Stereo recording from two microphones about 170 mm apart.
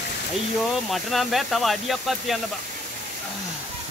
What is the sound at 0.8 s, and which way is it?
Speech, centre (ahead or behind).